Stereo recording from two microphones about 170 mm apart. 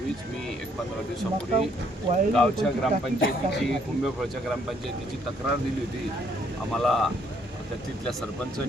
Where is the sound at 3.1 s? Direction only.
80° left.